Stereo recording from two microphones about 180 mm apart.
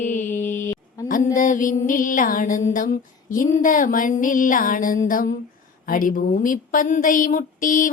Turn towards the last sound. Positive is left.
turn(degrees=50)  # may be behind; listen again after turning